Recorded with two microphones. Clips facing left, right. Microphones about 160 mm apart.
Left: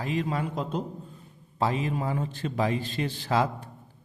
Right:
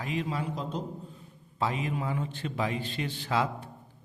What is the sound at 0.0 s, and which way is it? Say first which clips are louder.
Speech: left 3 dB; 45° left (ahead or behind).